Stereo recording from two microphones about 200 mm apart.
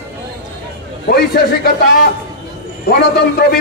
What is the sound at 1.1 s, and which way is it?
Speech, 55° left (ahead or behind).